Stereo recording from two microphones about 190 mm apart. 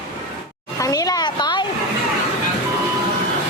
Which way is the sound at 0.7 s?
20° left (ahead or behind).